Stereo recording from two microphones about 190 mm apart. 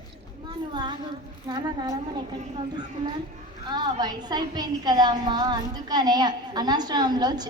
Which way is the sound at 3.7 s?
20° right (ahead or behind).